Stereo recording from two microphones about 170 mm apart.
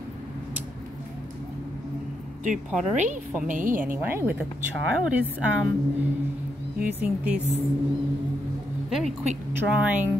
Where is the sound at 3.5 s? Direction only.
50° right (ahead or behind).